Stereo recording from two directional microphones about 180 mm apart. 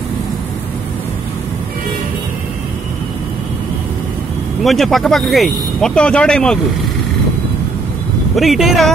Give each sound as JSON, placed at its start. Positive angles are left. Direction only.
{"t": 4.6, "sound": "speech", "side_deg": 0}
{"t": 8.4, "sound": "speech", "side_deg": 0}